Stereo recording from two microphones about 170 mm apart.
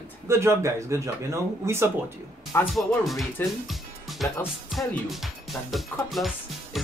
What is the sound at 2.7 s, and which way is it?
Speech, centre (ahead or behind).